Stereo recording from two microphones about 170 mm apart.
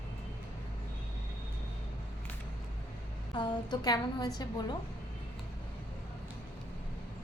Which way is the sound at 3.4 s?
25° left (ahead or behind).